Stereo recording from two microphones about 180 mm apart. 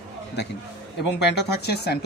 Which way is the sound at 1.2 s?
70° left (ahead or behind).